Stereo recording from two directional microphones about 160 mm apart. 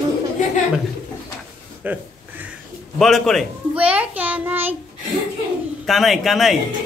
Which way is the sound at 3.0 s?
Centre (ahead or behind).